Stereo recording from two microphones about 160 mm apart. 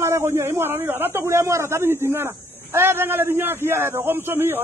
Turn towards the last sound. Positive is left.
turn(degrees=-15)  # may be behind; listen again after turning